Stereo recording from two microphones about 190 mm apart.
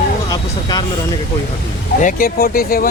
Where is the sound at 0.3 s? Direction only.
20° left (ahead or behind).